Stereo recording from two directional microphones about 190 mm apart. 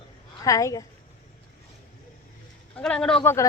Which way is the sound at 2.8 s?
5° left (ahead or behind).